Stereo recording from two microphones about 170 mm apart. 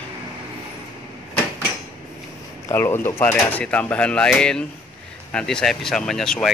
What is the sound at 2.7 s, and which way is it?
Speech, 15° left (ahead or behind).